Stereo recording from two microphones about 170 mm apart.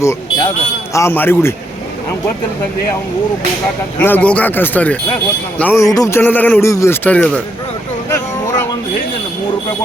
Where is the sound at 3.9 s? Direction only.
10° left (ahead or behind).